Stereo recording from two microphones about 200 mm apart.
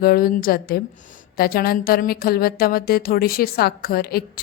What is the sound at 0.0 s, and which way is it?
A woman's voice, 45° left (ahead or behind).